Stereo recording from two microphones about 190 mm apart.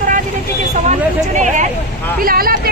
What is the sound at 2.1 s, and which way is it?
Speech, 50° right (ahead or behind).